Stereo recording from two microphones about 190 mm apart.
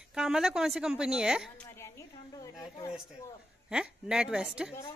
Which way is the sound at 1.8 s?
15° left (ahead or behind).